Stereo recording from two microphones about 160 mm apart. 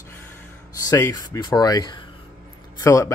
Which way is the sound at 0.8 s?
20° left (ahead or behind).